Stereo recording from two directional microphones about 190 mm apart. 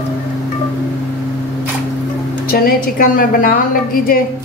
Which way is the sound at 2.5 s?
50° left (ahead or behind).